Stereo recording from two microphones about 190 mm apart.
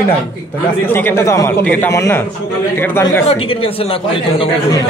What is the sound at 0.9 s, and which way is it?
A man's voice, 10° left (ahead or behind).